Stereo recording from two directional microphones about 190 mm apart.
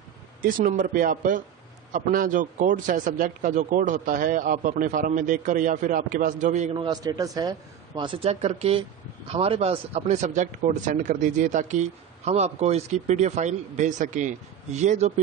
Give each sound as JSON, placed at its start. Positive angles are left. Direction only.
{"t": 0.4, "sound": "a man's voice", "side_deg": -45}